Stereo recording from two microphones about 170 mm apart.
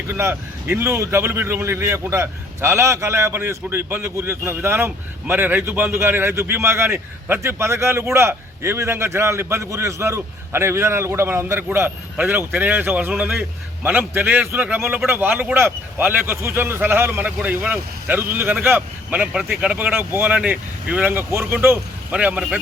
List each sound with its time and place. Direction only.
0.1 s a man's voice: 15° right (ahead or behind)